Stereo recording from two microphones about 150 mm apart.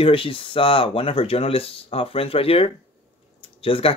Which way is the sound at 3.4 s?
40° left (ahead or behind).